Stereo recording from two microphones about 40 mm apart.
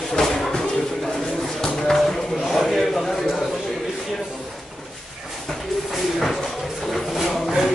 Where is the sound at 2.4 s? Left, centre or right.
Centre.